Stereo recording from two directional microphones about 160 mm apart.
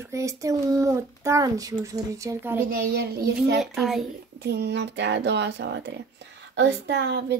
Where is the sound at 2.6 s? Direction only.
75° right (ahead or behind).